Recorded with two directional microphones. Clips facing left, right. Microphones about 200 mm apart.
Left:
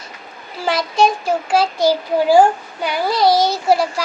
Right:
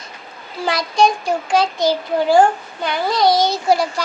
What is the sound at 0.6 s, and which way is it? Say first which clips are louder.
A child's voice: even; 5° left (ahead or behind).